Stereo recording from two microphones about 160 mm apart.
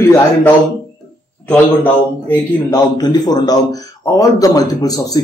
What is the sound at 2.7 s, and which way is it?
A man's voice, 25° left (ahead or behind).